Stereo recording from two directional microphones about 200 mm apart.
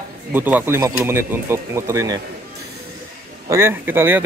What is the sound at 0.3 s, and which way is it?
Speech, 10° right (ahead or behind).